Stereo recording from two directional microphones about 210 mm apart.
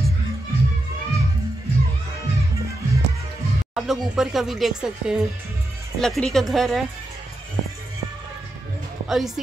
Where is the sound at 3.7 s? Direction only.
Centre (ahead or behind).